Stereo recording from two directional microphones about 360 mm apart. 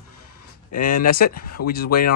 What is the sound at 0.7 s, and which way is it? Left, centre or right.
Speech, left.